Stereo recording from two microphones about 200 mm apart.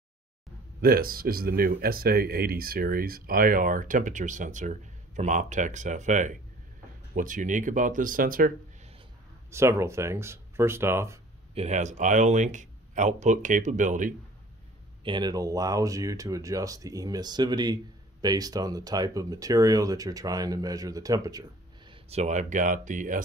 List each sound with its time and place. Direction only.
0.7 s a man's voice: 50° right (ahead or behind)
9.5 s speech: 15° right (ahead or behind)
11.5 s a man's voice: 35° right (ahead or behind)
15.0 s speech: 20° right (ahead or behind); by 23.2 s 40° right (ahead or behind)